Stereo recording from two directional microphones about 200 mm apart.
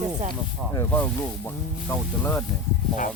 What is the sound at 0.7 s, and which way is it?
Speech, 10° left (ahead or behind).